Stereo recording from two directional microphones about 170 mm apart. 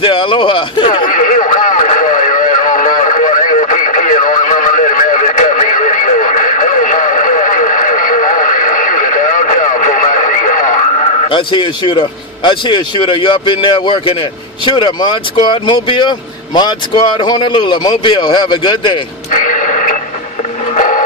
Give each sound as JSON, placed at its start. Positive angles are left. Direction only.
{"t": 0.0, "sound": "speech", "side_deg": 30}
{"t": 1.0, "sound": "radio", "side_deg": 50}
{"t": 14.6, "sound": "speech", "side_deg": 25}
{"t": 19.3, "sound": "a sound", "side_deg": 50}